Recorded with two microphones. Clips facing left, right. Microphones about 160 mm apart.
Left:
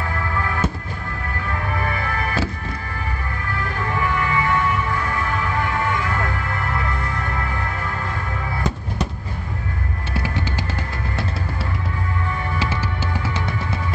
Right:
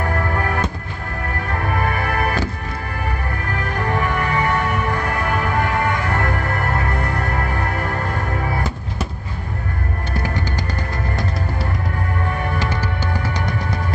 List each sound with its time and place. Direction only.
0.0 s music: 45° right (ahead or behind)
3.7 s music: 60° right (ahead or behind)
6.7 s music: 40° right (ahead or behind)
10.1 s music: 5° left (ahead or behind)
12.6 s music: 5° left (ahead or behind)